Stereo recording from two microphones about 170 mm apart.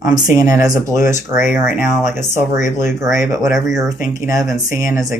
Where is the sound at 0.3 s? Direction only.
20° right (ahead or behind).